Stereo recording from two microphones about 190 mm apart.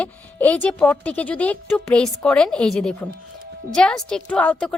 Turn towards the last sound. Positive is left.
turn(degrees=5)  # may be behind; listen again after turning